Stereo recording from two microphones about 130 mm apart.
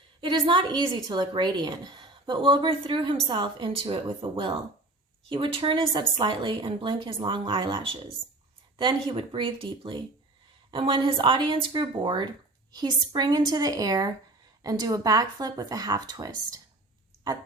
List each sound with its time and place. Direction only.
0.2 s a woman's voice: 40° right (ahead or behind)